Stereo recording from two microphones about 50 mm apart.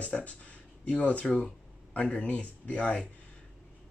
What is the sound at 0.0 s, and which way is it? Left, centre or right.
Speech, left.